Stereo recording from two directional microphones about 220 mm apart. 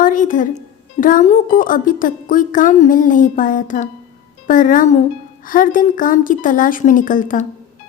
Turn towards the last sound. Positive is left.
turn(degrees=35)  # may be behind; listen again after turning